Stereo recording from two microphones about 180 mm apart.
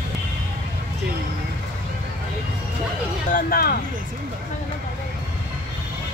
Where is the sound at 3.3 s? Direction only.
55° left (ahead or behind).